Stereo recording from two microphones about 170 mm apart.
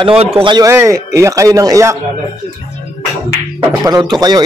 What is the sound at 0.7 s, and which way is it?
A man's voice, 15° right (ahead or behind).